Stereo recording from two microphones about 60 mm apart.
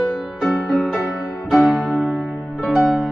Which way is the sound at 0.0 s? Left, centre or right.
Centre.